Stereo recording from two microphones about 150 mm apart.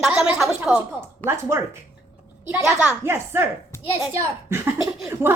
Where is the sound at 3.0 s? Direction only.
15° right (ahead or behind).